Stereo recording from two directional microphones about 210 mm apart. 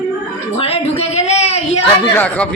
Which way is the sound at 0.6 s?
30° left (ahead or behind).